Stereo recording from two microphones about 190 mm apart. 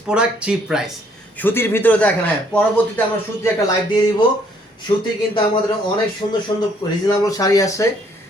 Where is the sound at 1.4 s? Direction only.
10° left (ahead or behind).